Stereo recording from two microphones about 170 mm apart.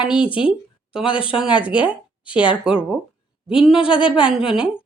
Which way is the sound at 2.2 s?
30° left (ahead or behind).